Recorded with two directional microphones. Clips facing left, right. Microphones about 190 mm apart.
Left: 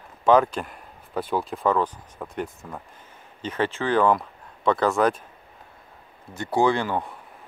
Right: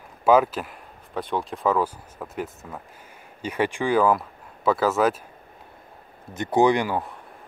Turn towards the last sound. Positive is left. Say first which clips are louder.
# right 2 dB
turn(degrees=-15)  # may be behind; listen again after turning